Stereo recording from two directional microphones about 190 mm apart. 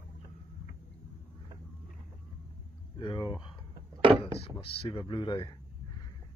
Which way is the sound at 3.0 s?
25° left (ahead or behind).